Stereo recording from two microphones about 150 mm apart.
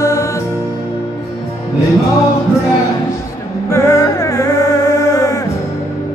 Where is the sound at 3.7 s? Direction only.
20° left (ahead or behind).